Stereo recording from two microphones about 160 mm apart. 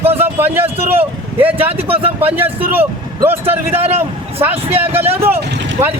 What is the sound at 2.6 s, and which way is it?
Speech, 10° right (ahead or behind).